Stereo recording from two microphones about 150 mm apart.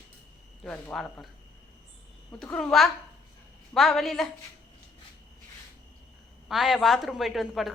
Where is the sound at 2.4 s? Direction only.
5° left (ahead or behind).